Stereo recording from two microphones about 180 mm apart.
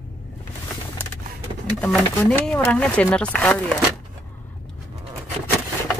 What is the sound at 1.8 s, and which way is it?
Speech, 5° left (ahead or behind).